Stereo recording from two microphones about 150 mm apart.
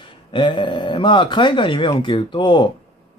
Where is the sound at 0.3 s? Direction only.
35° left (ahead or behind).